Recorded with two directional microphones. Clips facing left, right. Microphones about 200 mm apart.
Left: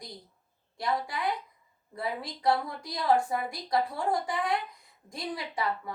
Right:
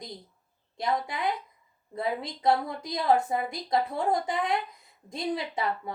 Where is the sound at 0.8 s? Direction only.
20° right (ahead or behind).